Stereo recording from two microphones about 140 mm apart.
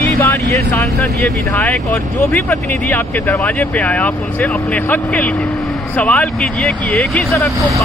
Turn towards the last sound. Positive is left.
turn(degrees=10)  # may be behind; listen again after turning